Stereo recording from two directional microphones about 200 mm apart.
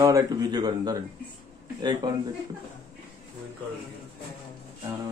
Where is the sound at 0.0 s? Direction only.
20° right (ahead or behind).